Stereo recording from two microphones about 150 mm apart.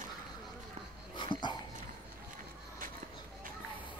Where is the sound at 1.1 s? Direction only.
30° left (ahead or behind).